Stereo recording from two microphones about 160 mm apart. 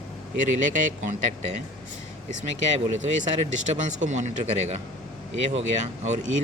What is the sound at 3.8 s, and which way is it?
Speech, 50° right (ahead or behind).